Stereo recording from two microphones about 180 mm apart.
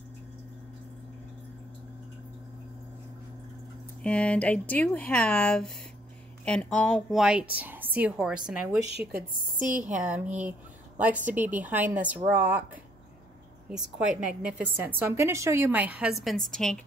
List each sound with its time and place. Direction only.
4.0 s a woman's voice: 5° left (ahead or behind)
9.1 s a woman's voice: 50° right (ahead or behind)
10.0 s a woman's voice: 10° right (ahead or behind)
13.7 s a woman's voice: 5° right (ahead or behind)